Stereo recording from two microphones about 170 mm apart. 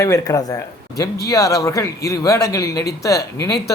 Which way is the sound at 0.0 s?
20° left (ahead or behind).